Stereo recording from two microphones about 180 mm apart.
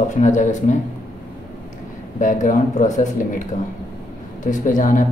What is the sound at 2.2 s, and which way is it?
Speech, 45° left (ahead or behind).